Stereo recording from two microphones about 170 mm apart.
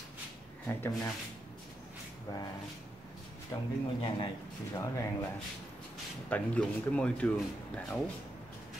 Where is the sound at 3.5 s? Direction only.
20° left (ahead or behind).